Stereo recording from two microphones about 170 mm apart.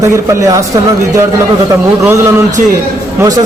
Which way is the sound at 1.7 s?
15° right (ahead or behind).